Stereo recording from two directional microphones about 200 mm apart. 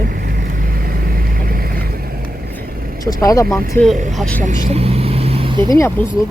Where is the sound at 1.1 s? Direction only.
45° right (ahead or behind).